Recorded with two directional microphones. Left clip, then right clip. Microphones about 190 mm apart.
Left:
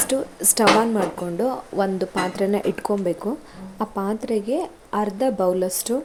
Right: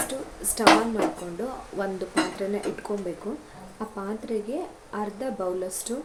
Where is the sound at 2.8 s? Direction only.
40° left (ahead or behind).